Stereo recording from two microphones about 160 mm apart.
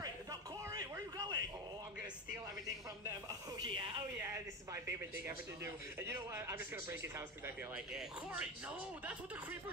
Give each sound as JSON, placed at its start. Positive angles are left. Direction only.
{"t": 0.0, "sound": "a sound", "side_deg": -25}
{"t": 3.5, "sound": "speech", "side_deg": -30}
{"t": 4.2, "sound": "speech", "side_deg": -15}